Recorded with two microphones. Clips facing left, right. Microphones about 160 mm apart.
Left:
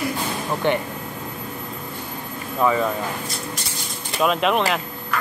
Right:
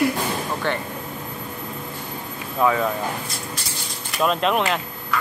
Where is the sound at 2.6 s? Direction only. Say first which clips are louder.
Even; centre (ahead or behind).